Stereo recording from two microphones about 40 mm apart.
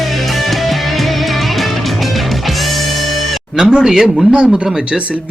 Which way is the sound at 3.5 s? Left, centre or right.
Centre.